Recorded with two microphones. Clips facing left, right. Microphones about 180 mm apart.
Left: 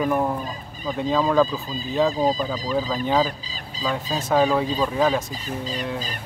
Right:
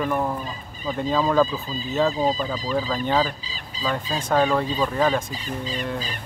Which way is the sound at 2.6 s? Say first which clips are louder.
Even; 5° left (ahead or behind).